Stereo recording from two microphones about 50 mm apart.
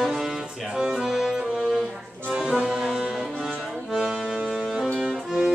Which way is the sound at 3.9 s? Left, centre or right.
Centre.